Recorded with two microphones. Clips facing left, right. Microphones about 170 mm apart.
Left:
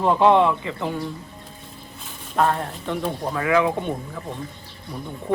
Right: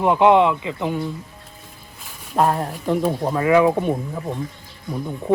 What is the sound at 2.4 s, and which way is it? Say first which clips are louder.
Speech: right 2 dB; 30° right (ahead or behind).